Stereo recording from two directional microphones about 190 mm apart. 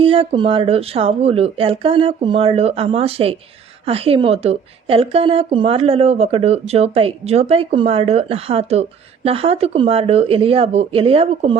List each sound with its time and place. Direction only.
0.0 s a woman's voice: 30° right (ahead or behind)